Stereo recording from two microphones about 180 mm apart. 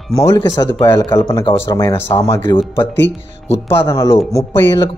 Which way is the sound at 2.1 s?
30° left (ahead or behind).